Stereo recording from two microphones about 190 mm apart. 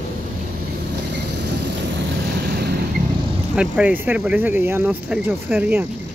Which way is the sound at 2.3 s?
55° right (ahead or behind).